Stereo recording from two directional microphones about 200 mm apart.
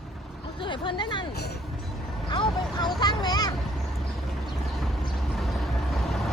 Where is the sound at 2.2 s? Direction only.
20° left (ahead or behind).